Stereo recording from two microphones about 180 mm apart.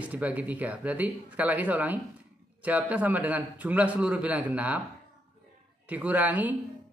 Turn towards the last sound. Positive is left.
turn(degrees=-10)  # may be behind; listen again after turning